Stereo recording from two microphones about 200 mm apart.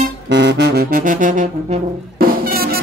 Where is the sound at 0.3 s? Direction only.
60° right (ahead or behind).